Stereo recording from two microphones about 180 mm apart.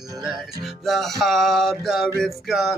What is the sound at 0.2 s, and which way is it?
Music, 5° right (ahead or behind).